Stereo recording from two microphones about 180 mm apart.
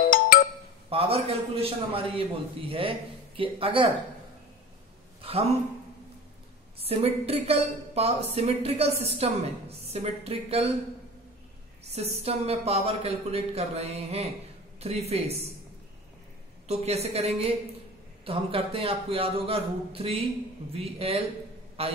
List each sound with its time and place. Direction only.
0.0 s music: 50° left (ahead or behind)
0.8 s speech: 30° right (ahead or behind)
5.2 s speech: 30° right (ahead or behind)
6.8 s speech: 35° right (ahead or behind)
11.9 s speech: 35° right (ahead or behind)
16.6 s speech: 35° right (ahead or behind)